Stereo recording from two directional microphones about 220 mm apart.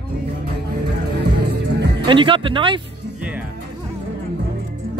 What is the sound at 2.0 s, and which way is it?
Speech, 20° right (ahead or behind).